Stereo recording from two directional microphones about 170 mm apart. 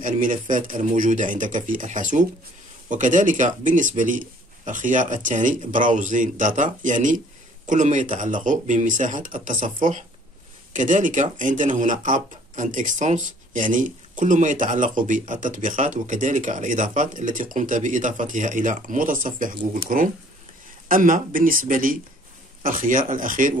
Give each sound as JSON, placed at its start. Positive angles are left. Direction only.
{"t": 0.0, "sound": "speech", "side_deg": -50}